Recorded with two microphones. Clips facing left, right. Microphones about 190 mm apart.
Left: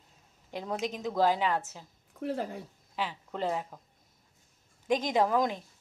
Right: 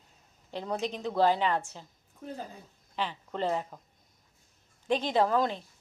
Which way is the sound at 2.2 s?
80° left.